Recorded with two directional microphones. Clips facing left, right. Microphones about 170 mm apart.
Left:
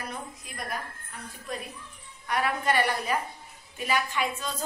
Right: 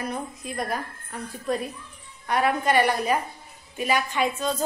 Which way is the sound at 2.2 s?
25° right (ahead or behind).